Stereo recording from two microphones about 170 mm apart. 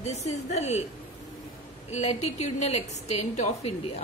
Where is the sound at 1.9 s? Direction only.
40° left (ahead or behind).